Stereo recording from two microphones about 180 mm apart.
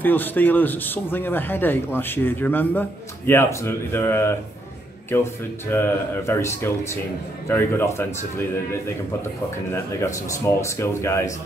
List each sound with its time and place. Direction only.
0.0 s speech: 10° left (ahead or behind)
5.7 s speech: 15° left (ahead or behind)